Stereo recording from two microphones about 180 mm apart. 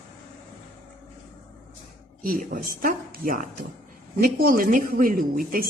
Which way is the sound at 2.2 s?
50° right (ahead or behind).